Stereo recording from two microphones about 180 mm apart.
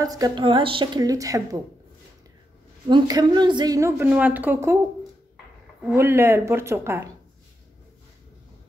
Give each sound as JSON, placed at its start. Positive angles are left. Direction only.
{"t": 0.0, "sound": "a woman's voice", "side_deg": -20}
{"t": 2.9, "sound": "a woman's voice", "side_deg": -25}
{"t": 5.9, "sound": "a woman's voice", "side_deg": -15}